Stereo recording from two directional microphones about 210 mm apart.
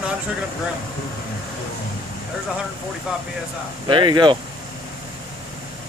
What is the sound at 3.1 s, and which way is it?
Speech, 5° right (ahead or behind).